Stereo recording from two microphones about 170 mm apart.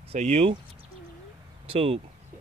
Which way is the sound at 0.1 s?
40° right (ahead or behind).